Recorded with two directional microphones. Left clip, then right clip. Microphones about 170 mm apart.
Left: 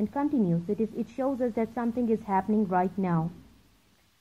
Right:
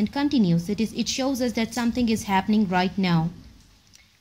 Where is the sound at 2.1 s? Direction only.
20° left (ahead or behind).